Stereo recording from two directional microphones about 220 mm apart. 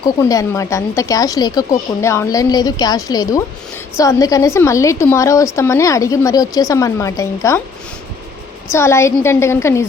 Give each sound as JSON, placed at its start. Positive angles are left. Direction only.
{"t": 0.0, "sound": "a woman's voice", "side_deg": 15}
{"t": 8.7, "sound": "a woman's voice", "side_deg": 10}